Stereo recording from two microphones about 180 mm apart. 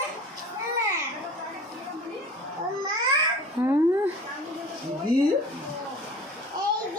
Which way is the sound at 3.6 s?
25° right (ahead or behind).